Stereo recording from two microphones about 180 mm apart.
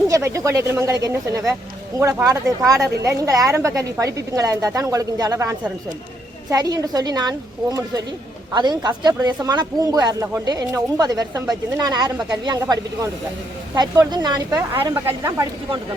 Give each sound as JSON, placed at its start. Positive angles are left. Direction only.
{"t": 0.1, "sound": "a woman's voice", "side_deg": -15}
{"t": 14.5, "sound": "a woman's voice", "side_deg": -10}